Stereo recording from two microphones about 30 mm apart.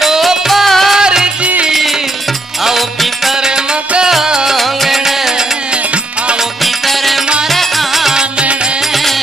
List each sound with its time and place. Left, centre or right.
0.5 s music: centre
0.9 s music: right
1.7 s music: centre
4.1 s music: centre
6.6 s music: centre